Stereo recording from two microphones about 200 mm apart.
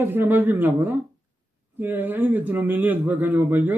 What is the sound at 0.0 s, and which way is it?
A man's voice, 10° right (ahead or behind).